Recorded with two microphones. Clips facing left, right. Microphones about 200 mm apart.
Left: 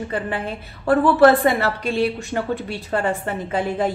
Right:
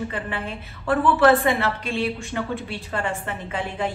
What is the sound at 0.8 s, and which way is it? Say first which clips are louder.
A woman's voice: left 4 dB; 40° left (ahead or behind).